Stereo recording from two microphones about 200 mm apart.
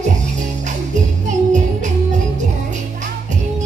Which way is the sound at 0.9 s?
35° right (ahead or behind).